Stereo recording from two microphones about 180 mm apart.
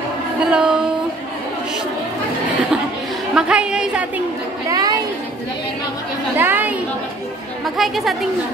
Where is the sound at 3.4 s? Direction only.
5° right (ahead or behind).